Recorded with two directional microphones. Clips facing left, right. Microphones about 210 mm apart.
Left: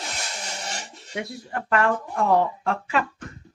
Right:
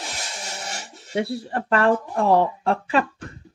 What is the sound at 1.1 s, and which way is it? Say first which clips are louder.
Speech: right 6 dB; 30° right (ahead or behind).